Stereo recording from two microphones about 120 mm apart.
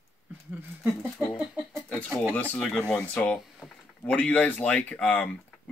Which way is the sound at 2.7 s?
10° left (ahead or behind).